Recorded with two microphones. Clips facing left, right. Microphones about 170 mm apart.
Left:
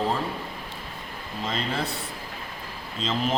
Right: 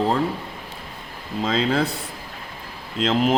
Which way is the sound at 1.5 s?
90° right.